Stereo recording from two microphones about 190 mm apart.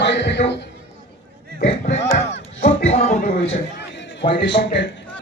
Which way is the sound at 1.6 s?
35° left (ahead or behind).